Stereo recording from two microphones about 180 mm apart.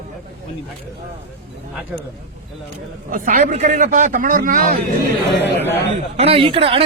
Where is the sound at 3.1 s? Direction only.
45° right (ahead or behind).